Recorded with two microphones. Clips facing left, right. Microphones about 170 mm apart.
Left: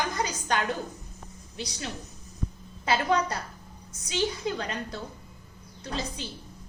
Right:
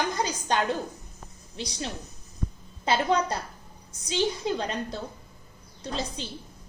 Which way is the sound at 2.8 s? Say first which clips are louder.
Right 1 dB; 25° right (ahead or behind).